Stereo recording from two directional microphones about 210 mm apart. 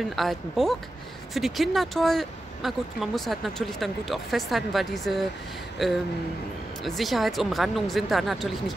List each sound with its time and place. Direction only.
0.1 s speech: centre (ahead or behind)